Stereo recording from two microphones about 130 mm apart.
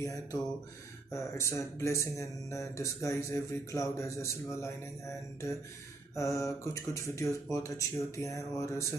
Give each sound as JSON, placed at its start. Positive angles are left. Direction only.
{"t": 0.0, "sound": "speech", "side_deg": 25}
{"t": 6.1, "sound": "speech", "side_deg": 25}